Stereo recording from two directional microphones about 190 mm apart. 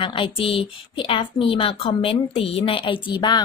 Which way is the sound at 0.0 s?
25° left (ahead or behind).